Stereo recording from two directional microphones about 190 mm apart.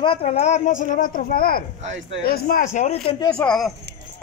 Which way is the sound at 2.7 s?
35° left (ahead or behind).